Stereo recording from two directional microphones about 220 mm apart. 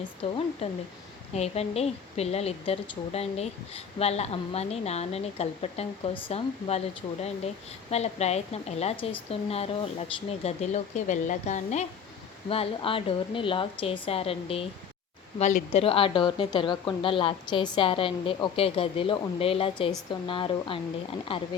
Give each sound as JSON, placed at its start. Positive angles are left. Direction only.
{"t": 0.2, "sound": "a woman's voice", "side_deg": 30}